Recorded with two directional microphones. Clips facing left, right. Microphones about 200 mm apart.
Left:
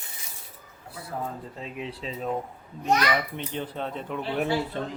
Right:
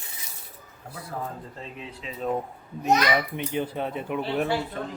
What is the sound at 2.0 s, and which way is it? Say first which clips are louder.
Speech: left 2 dB; 35° left (ahead or behind).